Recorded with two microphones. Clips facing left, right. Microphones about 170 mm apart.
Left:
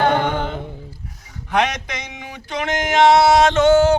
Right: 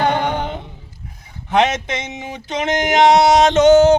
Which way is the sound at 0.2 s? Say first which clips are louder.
Even; 15° right (ahead or behind).